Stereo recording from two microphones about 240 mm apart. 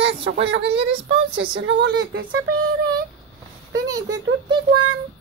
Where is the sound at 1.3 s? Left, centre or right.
Right.